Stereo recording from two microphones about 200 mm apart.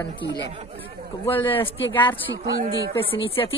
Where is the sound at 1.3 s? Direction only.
10° left (ahead or behind).